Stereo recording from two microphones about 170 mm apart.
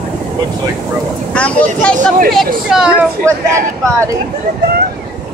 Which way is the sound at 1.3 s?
5° left (ahead or behind).